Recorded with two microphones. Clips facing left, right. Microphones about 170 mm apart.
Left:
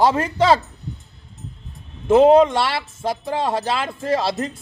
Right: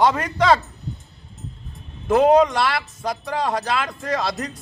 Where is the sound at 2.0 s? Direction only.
25° left (ahead or behind).